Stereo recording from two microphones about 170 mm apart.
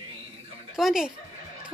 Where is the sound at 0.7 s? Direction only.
Centre (ahead or behind).